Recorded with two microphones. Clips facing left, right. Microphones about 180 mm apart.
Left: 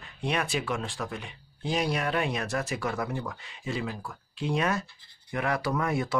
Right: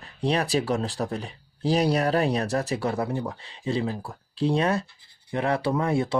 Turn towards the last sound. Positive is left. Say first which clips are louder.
# right 4 dB
turn(degrees=-30)  # may be behind; listen again after turning